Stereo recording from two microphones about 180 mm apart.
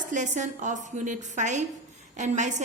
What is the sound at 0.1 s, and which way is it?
A woman's voice, 45° right (ahead or behind).